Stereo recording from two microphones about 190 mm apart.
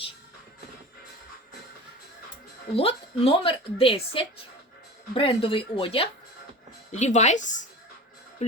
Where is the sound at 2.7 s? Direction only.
30° left (ahead or behind).